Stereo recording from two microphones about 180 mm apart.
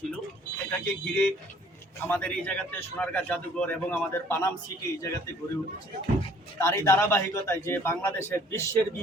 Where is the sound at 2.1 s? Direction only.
10° left (ahead or behind).